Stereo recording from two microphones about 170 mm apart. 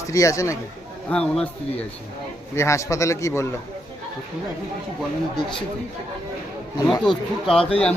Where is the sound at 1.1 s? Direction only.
5° left (ahead or behind).